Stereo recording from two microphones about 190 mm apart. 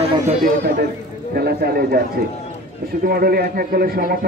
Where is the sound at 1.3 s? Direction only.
55° right (ahead or behind).